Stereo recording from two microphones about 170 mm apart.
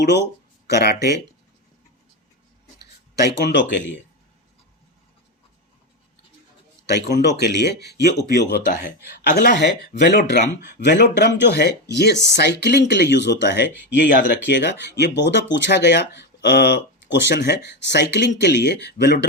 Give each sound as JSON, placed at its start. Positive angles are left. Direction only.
{"t": 0.7, "sound": "speech", "side_deg": 70}
{"t": 3.2, "sound": "speech", "side_deg": 80}
{"t": 6.8, "sound": "speech", "side_deg": 75}
{"t": 10.8, "sound": "speech", "side_deg": 90}